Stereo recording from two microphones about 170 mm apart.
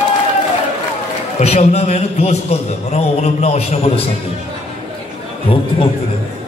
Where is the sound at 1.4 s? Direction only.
40° left (ahead or behind).